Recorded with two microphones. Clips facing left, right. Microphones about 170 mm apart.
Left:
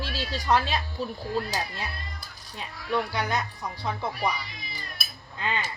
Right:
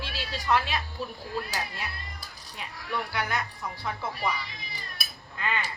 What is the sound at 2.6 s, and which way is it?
Speech, 25° left (ahead or behind).